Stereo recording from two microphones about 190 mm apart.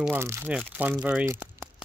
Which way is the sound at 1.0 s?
10° right (ahead or behind).